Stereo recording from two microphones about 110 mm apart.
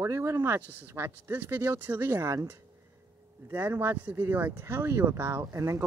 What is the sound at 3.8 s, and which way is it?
Speech, 15° right (ahead or behind).